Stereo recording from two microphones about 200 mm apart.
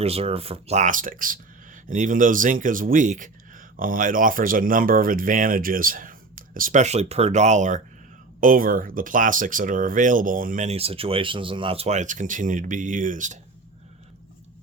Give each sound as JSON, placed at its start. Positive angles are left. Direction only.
{"t": 0.0, "sound": "speech", "side_deg": -30}